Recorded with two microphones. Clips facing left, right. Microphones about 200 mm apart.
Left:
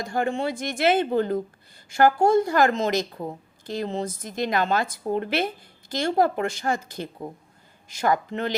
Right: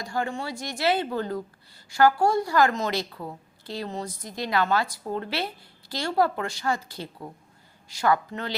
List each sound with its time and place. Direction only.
0.2 s a woman's voice: 20° left (ahead or behind)
0.6 s speech: 55° left (ahead or behind)
0.9 s a woman's voice: 20° left (ahead or behind)